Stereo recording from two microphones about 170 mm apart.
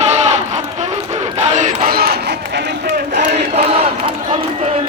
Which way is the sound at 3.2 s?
40° right (ahead or behind).